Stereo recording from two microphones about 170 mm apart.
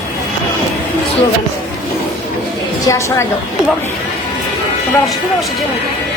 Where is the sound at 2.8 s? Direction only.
20° left (ahead or behind).